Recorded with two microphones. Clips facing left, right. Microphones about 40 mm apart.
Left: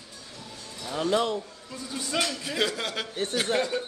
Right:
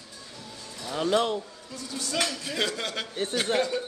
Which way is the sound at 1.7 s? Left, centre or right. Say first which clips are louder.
Left 1 dB; left.